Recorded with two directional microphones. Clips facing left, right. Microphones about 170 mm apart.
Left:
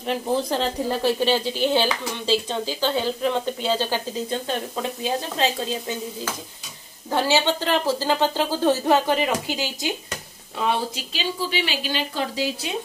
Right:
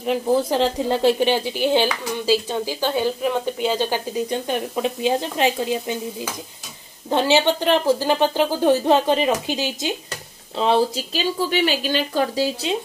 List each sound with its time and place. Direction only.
0.0 s a woman's voice: 5° right (ahead or behind)
0.5 s speech: 20° right (ahead or behind)
11.5 s speech: 45° right (ahead or behind)